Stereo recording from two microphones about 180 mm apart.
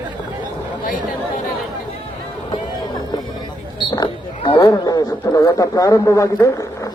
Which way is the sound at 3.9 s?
25° left (ahead or behind).